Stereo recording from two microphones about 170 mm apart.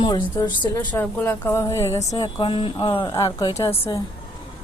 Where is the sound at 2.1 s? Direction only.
30° left (ahead or behind).